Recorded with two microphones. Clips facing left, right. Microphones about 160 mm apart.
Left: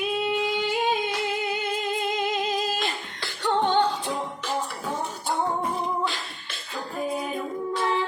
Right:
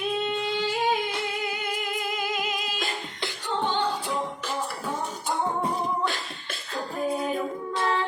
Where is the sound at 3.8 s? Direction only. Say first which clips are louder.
Left 1 dB; 10° right (ahead or behind).